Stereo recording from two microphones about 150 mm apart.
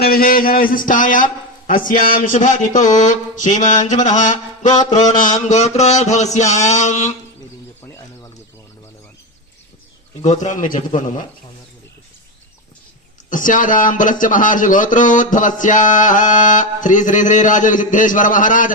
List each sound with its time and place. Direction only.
0.0 s a man's voice: 80° left; by 7.1 s 50° left (ahead or behind)
10.2 s a man's voice: 55° left (ahead or behind)
13.3 s a man's voice: 60° left (ahead or behind)